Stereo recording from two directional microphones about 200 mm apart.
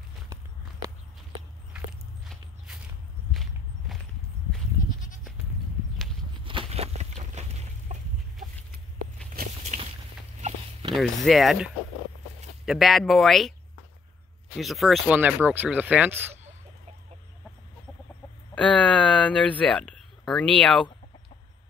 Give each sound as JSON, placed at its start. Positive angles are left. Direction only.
{"t": 2.2, "sound": "walk", "side_deg": 0}
{"t": 6.4, "sound": "a sound", "side_deg": -25}
{"t": 7.9, "sound": "chicken", "side_deg": -35}
{"t": 9.6, "sound": "a sound", "side_deg": -35}
{"t": 11.0, "sound": "speech", "side_deg": 0}
{"t": 14.6, "sound": "speech", "side_deg": 0}
{"t": 18.5, "sound": "speech", "side_deg": 5}